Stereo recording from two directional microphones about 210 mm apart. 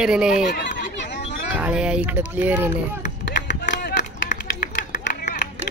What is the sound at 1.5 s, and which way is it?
Speech, 5° right (ahead or behind).